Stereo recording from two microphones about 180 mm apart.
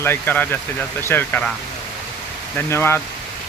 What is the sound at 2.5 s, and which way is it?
Speech, 15° left (ahead or behind).